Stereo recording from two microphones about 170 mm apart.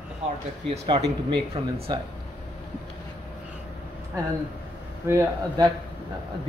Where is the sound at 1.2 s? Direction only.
30° right (ahead or behind).